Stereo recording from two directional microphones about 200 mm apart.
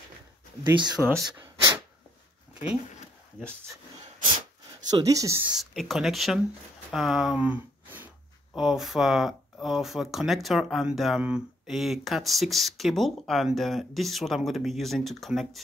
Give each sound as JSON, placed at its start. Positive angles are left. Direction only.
{"t": 0.9, "sound": "speech", "side_deg": 0}
{"t": 1.3, "sound": "a sound", "side_deg": -20}
{"t": 4.9, "sound": "speech", "side_deg": -15}